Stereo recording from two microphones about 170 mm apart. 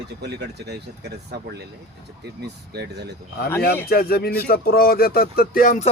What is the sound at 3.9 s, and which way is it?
Speech, 65° left (ahead or behind).